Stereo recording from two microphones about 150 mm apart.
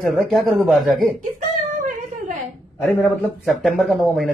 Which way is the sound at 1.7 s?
60° right (ahead or behind).